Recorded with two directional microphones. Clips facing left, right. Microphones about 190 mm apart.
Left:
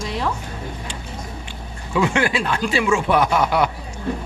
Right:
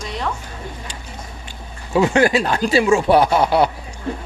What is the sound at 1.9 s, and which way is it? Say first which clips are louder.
Speech: right 5 dB; 40° right (ahead or behind).